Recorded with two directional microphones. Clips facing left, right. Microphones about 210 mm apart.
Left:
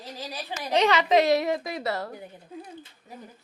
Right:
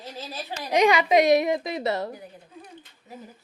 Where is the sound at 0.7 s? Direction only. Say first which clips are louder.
Right 2 dB; 15° right (ahead or behind).